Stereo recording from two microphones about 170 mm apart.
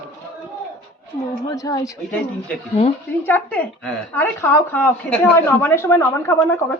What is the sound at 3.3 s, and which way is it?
A woman's voice, 10° left (ahead or behind).